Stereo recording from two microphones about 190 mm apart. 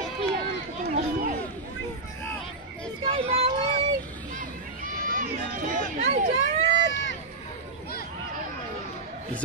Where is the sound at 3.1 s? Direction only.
25° right (ahead or behind).